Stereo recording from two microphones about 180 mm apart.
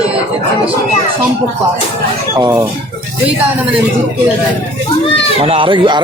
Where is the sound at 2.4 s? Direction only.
20° right (ahead or behind).